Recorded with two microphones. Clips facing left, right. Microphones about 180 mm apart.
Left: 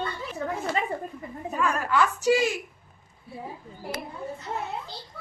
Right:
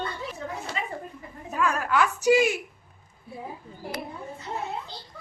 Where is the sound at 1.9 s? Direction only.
15° right (ahead or behind).